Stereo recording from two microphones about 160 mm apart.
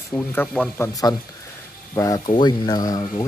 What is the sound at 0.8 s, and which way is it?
Speech, 20° left (ahead or behind).